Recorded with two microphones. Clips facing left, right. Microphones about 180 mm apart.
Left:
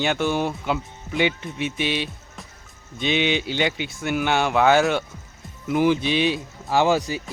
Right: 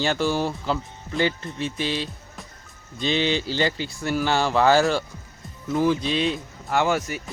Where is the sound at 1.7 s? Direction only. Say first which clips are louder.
Left 2 dB; 70° left (ahead or behind).